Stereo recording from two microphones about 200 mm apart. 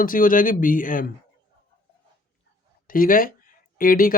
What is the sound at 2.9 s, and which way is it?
Speech, 45° left (ahead or behind).